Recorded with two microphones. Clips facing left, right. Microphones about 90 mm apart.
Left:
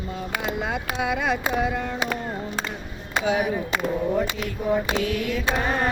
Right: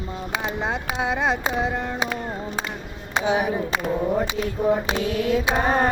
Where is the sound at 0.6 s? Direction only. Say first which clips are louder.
Right 1 dB; 30° right (ahead or behind).